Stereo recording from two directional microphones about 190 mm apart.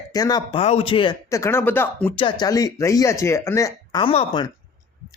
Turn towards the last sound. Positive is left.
turn(degrees=30)  # may be behind; listen again after turning